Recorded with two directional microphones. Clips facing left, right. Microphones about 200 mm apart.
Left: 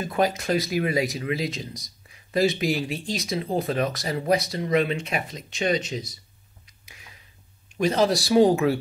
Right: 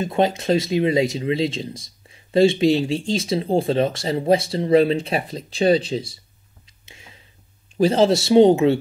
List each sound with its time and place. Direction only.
0.0 s speech: 25° right (ahead or behind)
6.6 s a sound: 25° right (ahead or behind)
7.7 s speech: 30° right (ahead or behind)